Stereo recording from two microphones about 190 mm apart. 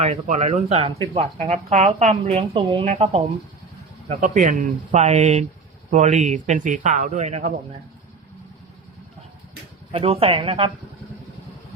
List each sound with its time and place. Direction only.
0.0 s speech: 35° right (ahead or behind)
4.2 s speech: 45° right (ahead or behind)
9.9 s speech: 30° right (ahead or behind)